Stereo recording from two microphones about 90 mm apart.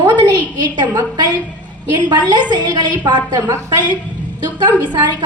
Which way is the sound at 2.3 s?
55° right (ahead or behind).